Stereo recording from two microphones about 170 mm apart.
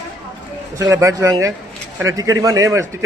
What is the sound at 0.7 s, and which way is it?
A man's voice, 20° right (ahead or behind).